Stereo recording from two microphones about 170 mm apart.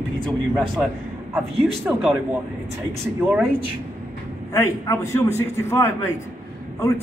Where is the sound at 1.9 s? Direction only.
5° right (ahead or behind).